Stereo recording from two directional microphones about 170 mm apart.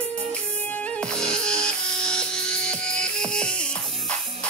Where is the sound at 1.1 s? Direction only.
5° left (ahead or behind).